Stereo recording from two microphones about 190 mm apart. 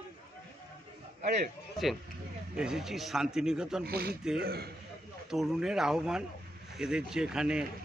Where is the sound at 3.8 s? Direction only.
55° right (ahead or behind).